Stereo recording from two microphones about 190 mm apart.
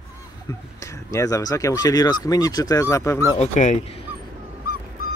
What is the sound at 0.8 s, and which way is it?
Speech, 15° left (ahead or behind).